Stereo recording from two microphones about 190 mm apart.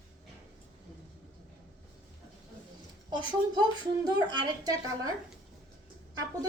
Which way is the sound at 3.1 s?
25° right (ahead or behind).